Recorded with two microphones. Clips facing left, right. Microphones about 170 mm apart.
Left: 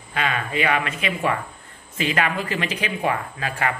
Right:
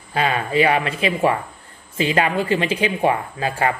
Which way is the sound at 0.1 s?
35° right (ahead or behind).